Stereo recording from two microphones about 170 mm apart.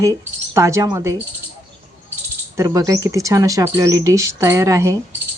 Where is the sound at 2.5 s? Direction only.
20° right (ahead or behind).